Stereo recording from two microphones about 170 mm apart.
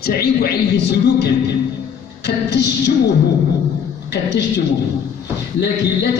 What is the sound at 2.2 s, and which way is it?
Speech, 85° left.